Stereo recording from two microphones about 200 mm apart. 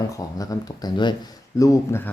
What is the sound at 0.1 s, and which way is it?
Speech, 20° left (ahead or behind).